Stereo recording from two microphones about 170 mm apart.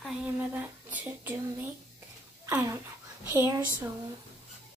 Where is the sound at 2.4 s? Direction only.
15° right (ahead or behind).